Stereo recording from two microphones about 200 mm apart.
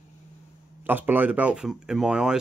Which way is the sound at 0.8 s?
10° right (ahead or behind).